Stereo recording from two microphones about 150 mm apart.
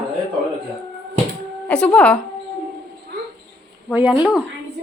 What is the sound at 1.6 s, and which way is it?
Speech, 5° left (ahead or behind).